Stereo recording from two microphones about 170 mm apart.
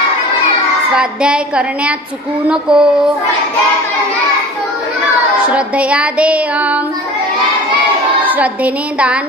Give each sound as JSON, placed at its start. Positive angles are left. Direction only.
{"t": 0.9, "sound": "child singing", "side_deg": -5}
{"t": 2.4, "sound": "child singing", "side_deg": -5}
{"t": 5.5, "sound": "music", "side_deg": -5}
{"t": 8.3, "sound": "music", "side_deg": -10}